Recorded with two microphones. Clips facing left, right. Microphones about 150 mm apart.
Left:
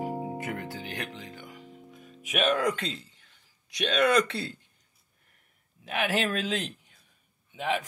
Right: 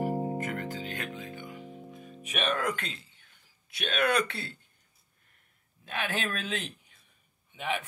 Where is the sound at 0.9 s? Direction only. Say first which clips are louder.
Even; 85° left.